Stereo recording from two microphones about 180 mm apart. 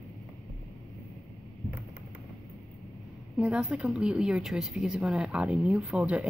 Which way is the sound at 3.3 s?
5° right (ahead or behind).